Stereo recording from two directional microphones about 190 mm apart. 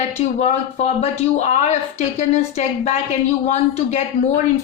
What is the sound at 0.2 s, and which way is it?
A woman's voice, 35° left (ahead or behind).